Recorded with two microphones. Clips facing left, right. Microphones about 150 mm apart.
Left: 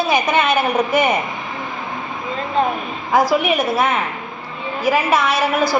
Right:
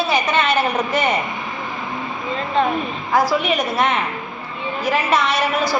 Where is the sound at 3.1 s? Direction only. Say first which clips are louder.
Left 2 dB; 10° left (ahead or behind).